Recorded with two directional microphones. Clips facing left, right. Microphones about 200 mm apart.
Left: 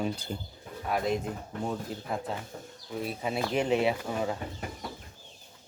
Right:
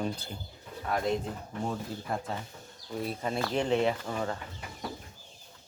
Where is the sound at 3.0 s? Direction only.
10° left (ahead or behind).